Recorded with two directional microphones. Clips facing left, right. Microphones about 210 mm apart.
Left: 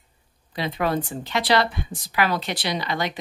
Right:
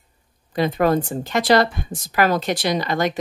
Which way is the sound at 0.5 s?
45° right (ahead or behind).